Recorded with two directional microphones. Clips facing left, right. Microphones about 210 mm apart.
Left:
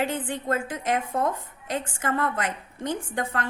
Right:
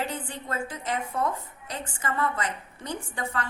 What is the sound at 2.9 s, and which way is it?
Speech, 90° left.